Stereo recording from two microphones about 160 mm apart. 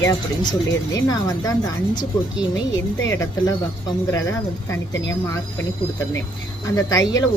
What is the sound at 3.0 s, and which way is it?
Speech, 20° left (ahead or behind).